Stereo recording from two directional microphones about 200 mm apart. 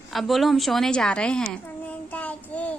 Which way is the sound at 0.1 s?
Centre (ahead or behind).